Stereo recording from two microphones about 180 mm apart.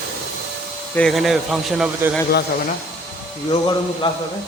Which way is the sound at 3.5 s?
25° left (ahead or behind).